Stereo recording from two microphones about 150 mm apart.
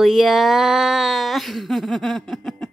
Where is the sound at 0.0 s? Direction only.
Centre (ahead or behind).